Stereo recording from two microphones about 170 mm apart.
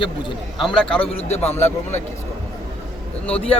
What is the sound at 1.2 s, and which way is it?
Speech, 40° left (ahead or behind).